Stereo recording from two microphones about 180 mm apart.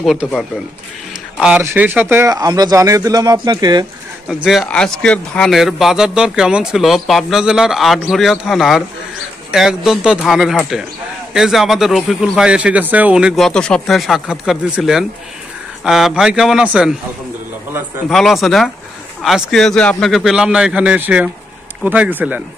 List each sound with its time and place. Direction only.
0.0 s a man's voice: centre (ahead or behind); by 3.8 s 20° right (ahead or behind)
4.3 s speech: centre (ahead or behind)
18.0 s speech: centre (ahead or behind)